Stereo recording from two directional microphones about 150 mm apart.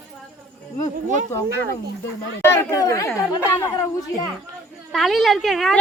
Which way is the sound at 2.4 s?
15° left (ahead or behind).